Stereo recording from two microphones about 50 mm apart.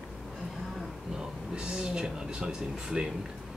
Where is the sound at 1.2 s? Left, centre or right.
Centre.